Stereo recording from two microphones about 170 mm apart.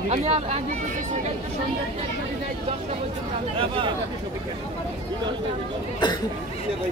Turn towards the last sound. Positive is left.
turn(degrees=25)  # may be behind; listen again after turning